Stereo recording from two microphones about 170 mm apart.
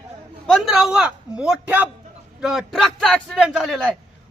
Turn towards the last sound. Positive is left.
turn(degrees=5)  # may be behind; listen again after turning